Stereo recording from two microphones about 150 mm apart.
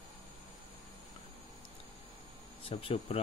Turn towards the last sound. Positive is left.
turn(degrees=40)  # may be behind; listen again after turning